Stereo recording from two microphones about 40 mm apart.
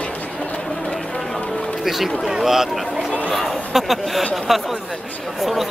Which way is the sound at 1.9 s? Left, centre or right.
Centre.